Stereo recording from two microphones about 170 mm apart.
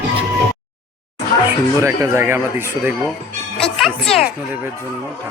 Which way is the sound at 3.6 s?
Centre (ahead or behind).